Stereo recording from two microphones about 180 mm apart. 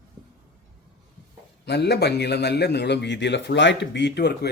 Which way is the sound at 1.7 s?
70° left (ahead or behind).